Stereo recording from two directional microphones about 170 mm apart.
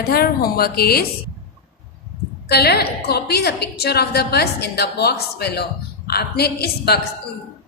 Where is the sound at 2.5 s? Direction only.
70° left (ahead or behind).